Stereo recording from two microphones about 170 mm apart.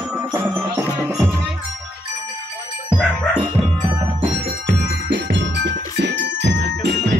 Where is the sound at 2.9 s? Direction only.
5° right (ahead or behind).